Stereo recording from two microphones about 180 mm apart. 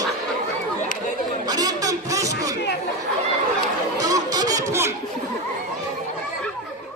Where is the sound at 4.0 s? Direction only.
20° right (ahead or behind).